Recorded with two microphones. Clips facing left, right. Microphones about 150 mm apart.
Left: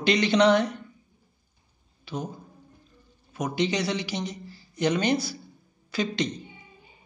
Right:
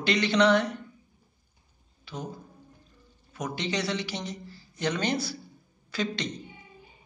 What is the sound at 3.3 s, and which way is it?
A man's voice, 15° left (ahead or behind).